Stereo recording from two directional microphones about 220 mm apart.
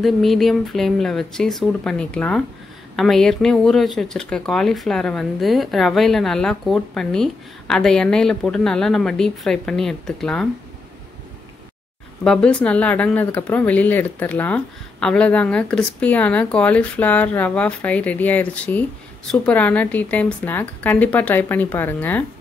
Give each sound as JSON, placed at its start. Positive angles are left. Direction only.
{"t": 0.0, "sound": "speech", "side_deg": 0}
{"t": 12.3, "sound": "speech", "side_deg": 5}